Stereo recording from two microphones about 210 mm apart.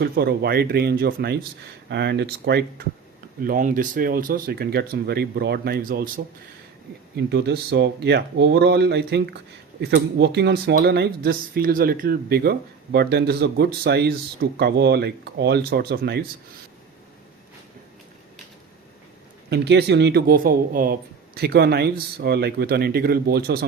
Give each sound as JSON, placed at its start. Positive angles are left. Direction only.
{"t": 0.0, "sound": "speech", "side_deg": -50}
{"t": 3.4, "sound": "speech", "side_deg": -40}
{"t": 7.3, "sound": "speech", "side_deg": -50}
{"t": 19.5, "sound": "speech", "side_deg": -55}